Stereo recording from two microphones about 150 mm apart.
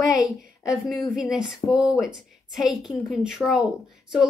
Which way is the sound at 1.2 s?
5° right (ahead or behind).